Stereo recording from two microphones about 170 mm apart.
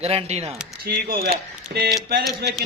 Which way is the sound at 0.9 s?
60° right (ahead or behind).